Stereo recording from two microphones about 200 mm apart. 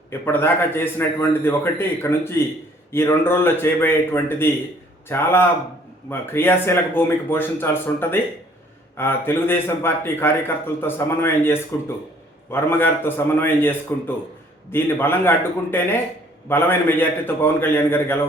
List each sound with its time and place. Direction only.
0.1 s a man's voice: 10° left (ahead or behind)